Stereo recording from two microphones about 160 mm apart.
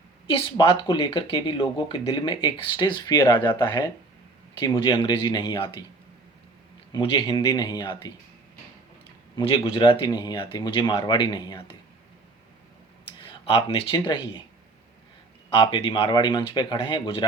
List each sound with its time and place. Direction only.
0.3 s speech: 35° left (ahead or behind)
6.9 s speech: 30° left (ahead or behind)
9.4 s speech: 35° left (ahead or behind)
13.2 s speech: 35° left (ahead or behind)
15.5 s speech: 30° left (ahead or behind)